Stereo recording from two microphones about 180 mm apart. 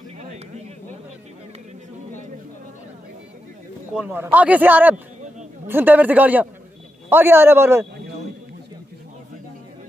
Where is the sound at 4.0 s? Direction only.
10° right (ahead or behind).